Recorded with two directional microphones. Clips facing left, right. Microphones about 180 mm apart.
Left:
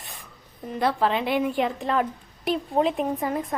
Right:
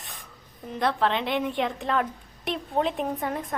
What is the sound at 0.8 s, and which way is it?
A woman's voice, 5° left (ahead or behind).